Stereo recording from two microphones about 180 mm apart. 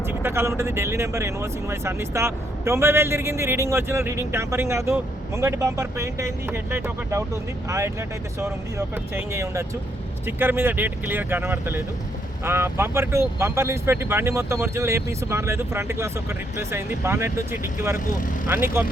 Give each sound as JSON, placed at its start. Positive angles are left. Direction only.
{"t": 0.1, "sound": "speech", "side_deg": -10}
{"t": 9.1, "sound": "speech", "side_deg": -15}
{"t": 17.9, "sound": "speech", "side_deg": 45}
{"t": 18.4, "sound": "speech", "side_deg": -15}